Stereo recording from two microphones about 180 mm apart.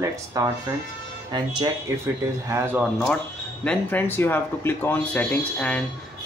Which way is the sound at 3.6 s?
10° left (ahead or behind).